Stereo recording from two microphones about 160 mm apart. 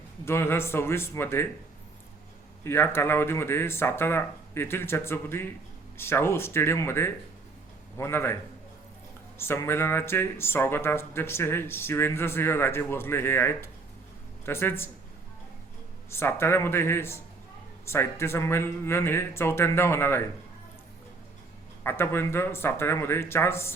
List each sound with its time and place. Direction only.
0.3 s speech: 15° left (ahead or behind)
2.6 s speech: 15° left (ahead or behind)
9.4 s speech: 15° left (ahead or behind)
16.0 s speech: 15° left (ahead or behind)
21.8 s speech: 15° left (ahead or behind)